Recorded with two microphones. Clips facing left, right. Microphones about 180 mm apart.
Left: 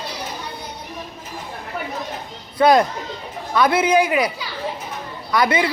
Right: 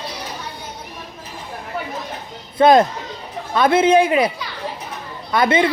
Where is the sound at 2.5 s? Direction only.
25° right (ahead or behind).